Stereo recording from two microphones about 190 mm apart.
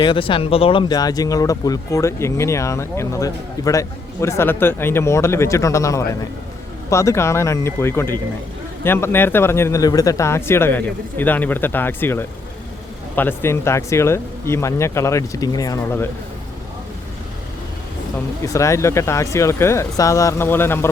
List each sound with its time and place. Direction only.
0.0 s speech: 25° left (ahead or behind)
18.4 s speech: 15° left (ahead or behind)